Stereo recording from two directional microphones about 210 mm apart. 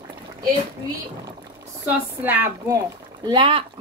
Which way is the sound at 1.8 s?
10° right (ahead or behind).